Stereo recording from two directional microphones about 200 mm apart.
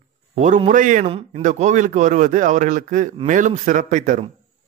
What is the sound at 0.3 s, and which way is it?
Speech, 35° right (ahead or behind).